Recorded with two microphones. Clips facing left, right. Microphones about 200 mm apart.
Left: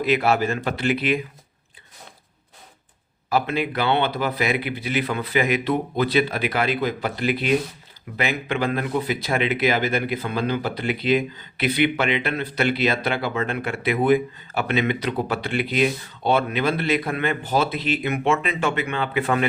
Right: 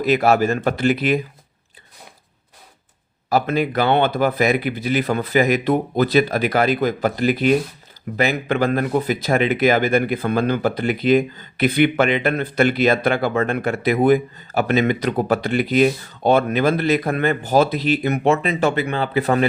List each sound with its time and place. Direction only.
0.0 s speech: 40° right (ahead or behind)
3.2 s speech: 40° right (ahead or behind)